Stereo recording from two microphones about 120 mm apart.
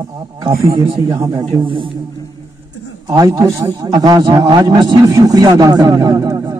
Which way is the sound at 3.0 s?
30° right (ahead or behind).